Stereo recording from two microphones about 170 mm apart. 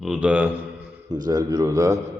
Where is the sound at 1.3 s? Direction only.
20° right (ahead or behind).